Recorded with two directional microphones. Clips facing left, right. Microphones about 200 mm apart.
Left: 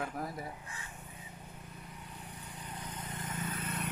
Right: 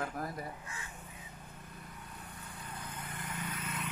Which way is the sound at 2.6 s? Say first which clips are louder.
Left 1 dB; 15° left (ahead or behind).